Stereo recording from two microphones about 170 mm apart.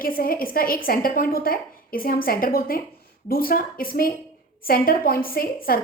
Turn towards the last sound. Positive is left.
turn(degrees=60)  # may be behind; listen again after turning